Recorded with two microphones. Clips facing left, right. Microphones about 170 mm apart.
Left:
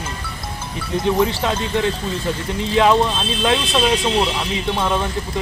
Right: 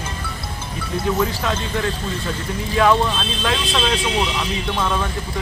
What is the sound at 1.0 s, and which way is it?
Speech, 25° left (ahead or behind).